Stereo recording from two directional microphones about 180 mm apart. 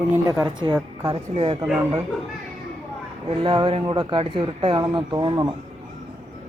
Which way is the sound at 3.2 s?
25° right (ahead or behind).